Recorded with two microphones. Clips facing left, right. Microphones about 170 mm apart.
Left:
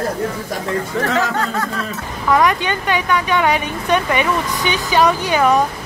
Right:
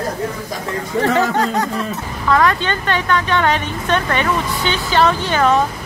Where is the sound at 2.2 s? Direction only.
15° left (ahead or behind).